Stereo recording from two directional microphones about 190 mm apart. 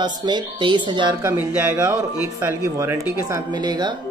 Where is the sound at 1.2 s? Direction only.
10° right (ahead or behind).